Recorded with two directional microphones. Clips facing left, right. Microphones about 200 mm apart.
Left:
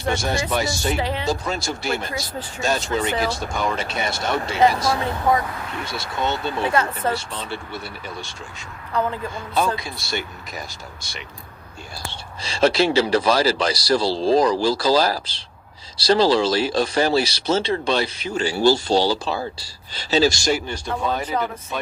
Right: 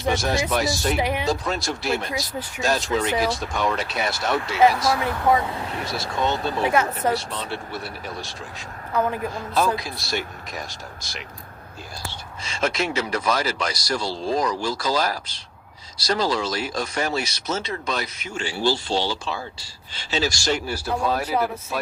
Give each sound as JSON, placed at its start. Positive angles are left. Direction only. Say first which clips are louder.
{"t": 0.0, "sound": "speech", "louder": "right 1 dB", "side_deg": 0}
{"t": 0.9, "sound": "speech", "louder": "right 1 dB", "side_deg": -15}
{"t": 1.3, "sound": "speech", "louder": "even", "side_deg": 0}
{"t": 5.5, "sound": "speech", "louder": "right 1 dB", "side_deg": -30}
{"t": 5.8, "sound": "speech", "louder": "right 1 dB", "side_deg": 0}
{"t": 6.7, "sound": "speech", "louder": "right 1 dB", "side_deg": -10}
{"t": 12.0, "sound": "speech", "louder": "left 2 dB", "side_deg": 35}
{"t": 20.7, "sound": "speech", "louder": "right 1 dB", "side_deg": -5}